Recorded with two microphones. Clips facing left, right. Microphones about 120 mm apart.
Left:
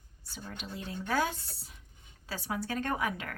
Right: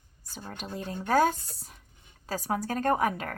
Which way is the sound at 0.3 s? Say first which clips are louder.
Right 4 dB; 40° right (ahead or behind).